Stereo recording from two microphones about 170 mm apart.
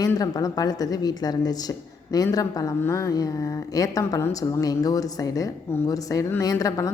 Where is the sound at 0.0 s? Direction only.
20° left (ahead or behind).